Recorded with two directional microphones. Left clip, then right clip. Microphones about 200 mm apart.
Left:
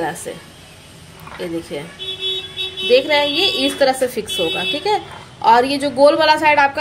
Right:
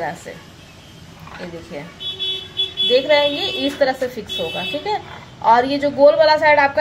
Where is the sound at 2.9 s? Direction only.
55° left (ahead or behind).